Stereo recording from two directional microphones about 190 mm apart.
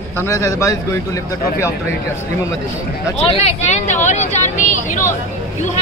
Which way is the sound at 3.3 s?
35° left (ahead or behind).